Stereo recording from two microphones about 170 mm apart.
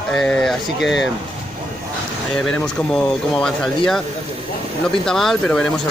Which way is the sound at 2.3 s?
5° left (ahead or behind).